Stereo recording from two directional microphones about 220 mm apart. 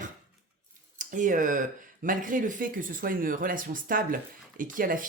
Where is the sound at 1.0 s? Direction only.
35° right (ahead or behind).